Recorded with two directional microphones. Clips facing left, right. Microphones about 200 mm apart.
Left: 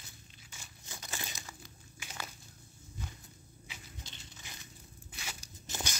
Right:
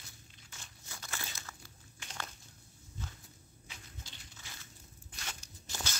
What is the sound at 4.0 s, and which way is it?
Biting, 20° left (ahead or behind).